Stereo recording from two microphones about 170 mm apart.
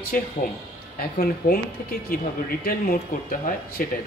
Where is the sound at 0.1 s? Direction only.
55° left (ahead or behind).